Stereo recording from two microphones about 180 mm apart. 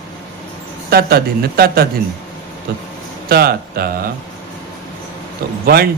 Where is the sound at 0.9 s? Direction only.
60° right (ahead or behind).